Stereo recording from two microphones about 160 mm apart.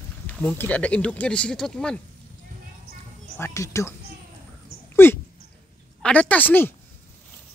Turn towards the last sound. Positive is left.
turn(degrees=10)  # may be behind; listen again after turning